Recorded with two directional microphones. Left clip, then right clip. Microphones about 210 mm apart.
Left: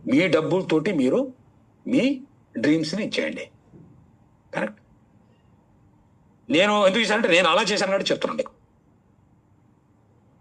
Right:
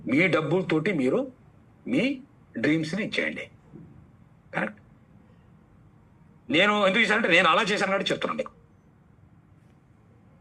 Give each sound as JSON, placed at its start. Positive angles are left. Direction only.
{"t": 0.0, "sound": "a man's voice", "side_deg": 20}
{"t": 6.5, "sound": "a man's voice", "side_deg": 20}